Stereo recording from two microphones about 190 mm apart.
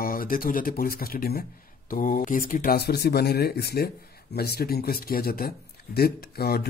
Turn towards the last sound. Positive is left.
turn(degrees=55)  # may be behind; listen again after turning